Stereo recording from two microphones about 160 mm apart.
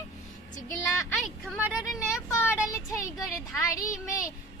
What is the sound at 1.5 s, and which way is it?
Speech, 10° right (ahead or behind).